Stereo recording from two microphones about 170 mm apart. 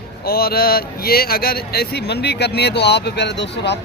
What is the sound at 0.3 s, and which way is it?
Speech, 65° left (ahead or behind).